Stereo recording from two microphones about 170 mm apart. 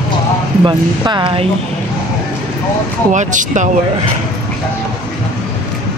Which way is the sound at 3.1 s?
45° right (ahead or behind).